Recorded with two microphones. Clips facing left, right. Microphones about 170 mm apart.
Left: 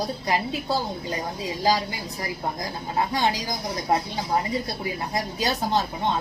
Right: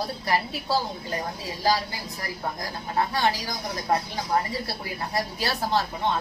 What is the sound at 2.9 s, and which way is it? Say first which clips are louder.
A woman's voice: even; 15° left (ahead or behind).